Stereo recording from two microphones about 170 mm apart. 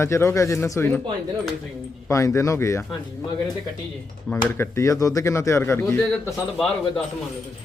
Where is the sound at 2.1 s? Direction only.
20° left (ahead or behind).